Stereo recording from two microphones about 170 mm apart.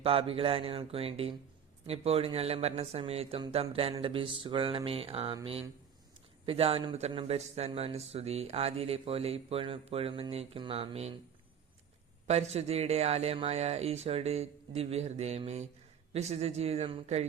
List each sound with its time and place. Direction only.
0.0 s speech: 35° right (ahead or behind)
12.3 s speech: 40° right (ahead or behind)